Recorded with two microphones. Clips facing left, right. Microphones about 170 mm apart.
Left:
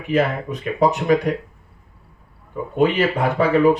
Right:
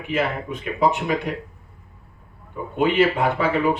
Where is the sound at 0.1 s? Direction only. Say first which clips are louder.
Left 4 dB; 40° left (ahead or behind).